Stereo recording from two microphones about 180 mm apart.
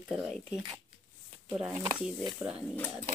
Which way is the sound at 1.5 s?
10° right (ahead or behind).